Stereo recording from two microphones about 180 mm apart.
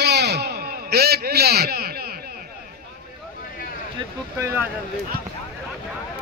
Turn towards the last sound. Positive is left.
turn(degrees=-15)  # may be behind; listen again after turning